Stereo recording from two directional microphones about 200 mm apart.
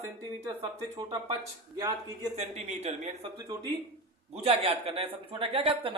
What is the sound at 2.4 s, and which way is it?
Speech, 35° right (ahead or behind).